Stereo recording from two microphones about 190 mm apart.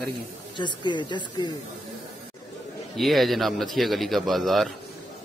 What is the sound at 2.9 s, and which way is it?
Speech, centre (ahead or behind).